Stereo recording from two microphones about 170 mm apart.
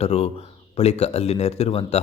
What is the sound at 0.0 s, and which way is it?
Speech, 35° left (ahead or behind).